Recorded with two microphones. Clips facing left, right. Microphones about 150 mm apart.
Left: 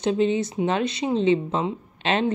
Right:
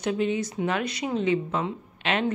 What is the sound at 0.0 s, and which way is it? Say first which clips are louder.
Speech: left 4 dB; 25° left (ahead or behind).